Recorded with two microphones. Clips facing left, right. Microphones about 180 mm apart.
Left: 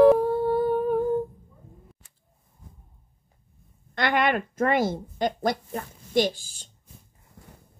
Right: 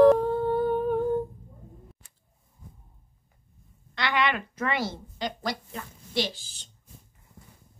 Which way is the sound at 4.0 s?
50° left (ahead or behind).